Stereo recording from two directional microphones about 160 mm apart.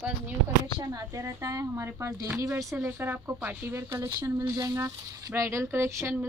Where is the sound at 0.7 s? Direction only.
20° right (ahead or behind).